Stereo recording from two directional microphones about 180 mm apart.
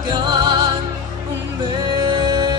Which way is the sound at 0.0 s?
25° right (ahead or behind).